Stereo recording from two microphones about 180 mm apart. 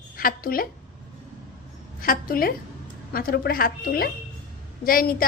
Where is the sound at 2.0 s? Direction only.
55° left (ahead or behind).